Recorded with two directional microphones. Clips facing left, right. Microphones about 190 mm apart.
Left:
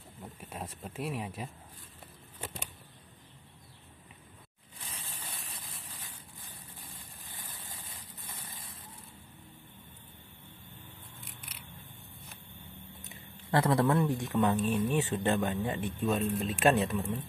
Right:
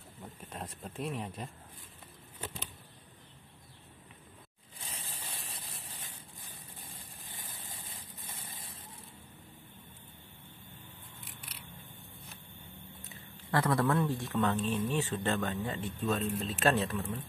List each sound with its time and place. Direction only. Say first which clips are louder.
0.2 s speech: left 1 dB; 5° left (ahead or behind)
4.7 s a sound: even; 30° right (ahead or behind)
13.5 s a man's voice: left 3 dB; 25° left (ahead or behind)